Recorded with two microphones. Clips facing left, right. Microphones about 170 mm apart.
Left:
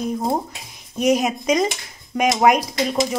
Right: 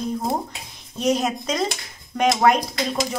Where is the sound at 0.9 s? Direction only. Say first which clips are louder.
Left 3 dB; 15° left (ahead or behind).